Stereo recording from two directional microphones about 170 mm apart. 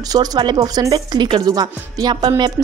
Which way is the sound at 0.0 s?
20° right (ahead or behind).